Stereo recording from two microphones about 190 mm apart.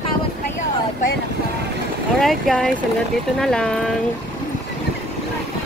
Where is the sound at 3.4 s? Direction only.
5° left (ahead or behind).